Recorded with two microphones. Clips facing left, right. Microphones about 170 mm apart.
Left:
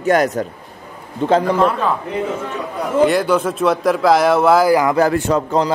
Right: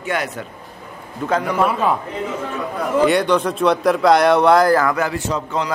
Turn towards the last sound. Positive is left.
turn(degrees=55)  # may be behind; listen again after turning